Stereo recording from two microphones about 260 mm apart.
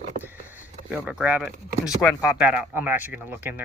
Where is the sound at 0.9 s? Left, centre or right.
Centre.